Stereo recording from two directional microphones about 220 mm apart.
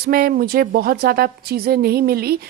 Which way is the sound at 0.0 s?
40° right (ahead or behind).